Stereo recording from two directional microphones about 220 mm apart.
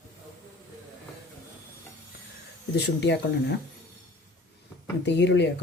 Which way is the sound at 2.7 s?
50° left (ahead or behind).